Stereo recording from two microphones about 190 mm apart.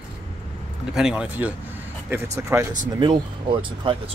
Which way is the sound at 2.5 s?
10° right (ahead or behind).